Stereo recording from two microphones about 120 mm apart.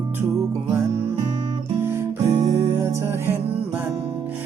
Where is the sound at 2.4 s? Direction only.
25° right (ahead or behind).